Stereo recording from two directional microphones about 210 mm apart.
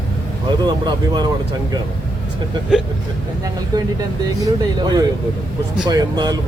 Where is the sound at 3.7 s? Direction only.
20° right (ahead or behind).